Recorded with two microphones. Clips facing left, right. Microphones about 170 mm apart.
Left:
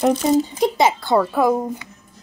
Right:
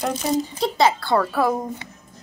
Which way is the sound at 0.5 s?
20° left (ahead or behind).